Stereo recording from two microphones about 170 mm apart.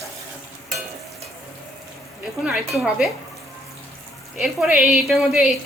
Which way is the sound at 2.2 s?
Centre (ahead or behind).